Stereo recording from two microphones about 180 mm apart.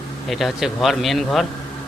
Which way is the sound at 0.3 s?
Centre (ahead or behind).